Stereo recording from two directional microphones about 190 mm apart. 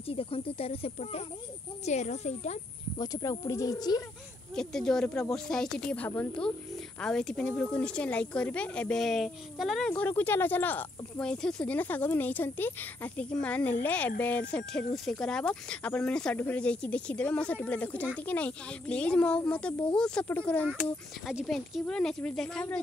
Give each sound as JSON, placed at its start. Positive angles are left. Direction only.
{"t": 0.1, "sound": "speech", "side_deg": 30}
{"t": 3.0, "sound": "speech", "side_deg": 20}
{"t": 4.6, "sound": "speech", "side_deg": 5}